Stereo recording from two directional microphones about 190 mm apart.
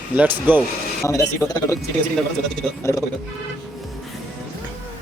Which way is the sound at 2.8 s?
15° left (ahead or behind).